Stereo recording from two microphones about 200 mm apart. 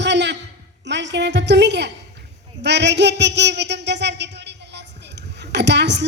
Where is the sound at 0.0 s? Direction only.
60° right (ahead or behind).